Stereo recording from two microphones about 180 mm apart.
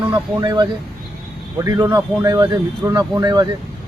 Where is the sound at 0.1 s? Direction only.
20° right (ahead or behind).